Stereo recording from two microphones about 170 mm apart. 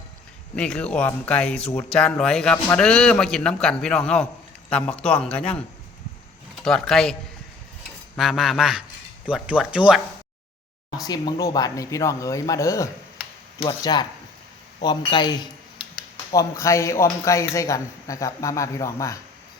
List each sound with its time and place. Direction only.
0.5 s a man's voice: 5° left (ahead or behind)
11.0 s speech: 20° left (ahead or behind)